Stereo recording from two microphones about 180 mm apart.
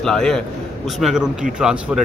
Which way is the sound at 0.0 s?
5° left (ahead or behind).